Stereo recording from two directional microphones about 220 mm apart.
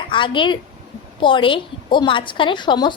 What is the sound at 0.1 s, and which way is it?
A woman's voice, 20° left (ahead or behind).